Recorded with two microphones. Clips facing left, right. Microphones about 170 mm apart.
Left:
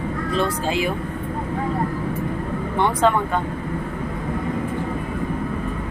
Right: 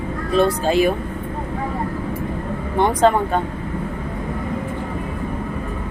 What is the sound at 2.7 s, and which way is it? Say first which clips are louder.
Speech: right 3 dB; 40° right (ahead or behind).